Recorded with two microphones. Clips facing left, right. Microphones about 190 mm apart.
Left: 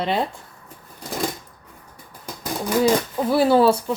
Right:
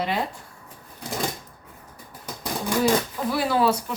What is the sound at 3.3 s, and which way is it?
Speech, 30° left (ahead or behind).